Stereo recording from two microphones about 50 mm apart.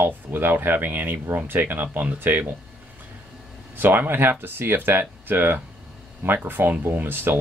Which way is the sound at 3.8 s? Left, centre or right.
Right.